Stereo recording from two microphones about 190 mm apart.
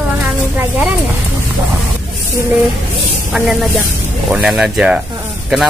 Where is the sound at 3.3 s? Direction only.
5° right (ahead or behind).